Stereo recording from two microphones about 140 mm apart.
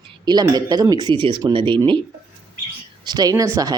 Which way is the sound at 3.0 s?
30° right (ahead or behind).